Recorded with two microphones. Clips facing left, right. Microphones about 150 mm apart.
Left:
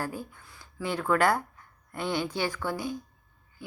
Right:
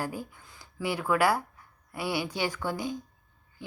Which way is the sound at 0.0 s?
15° right (ahead or behind).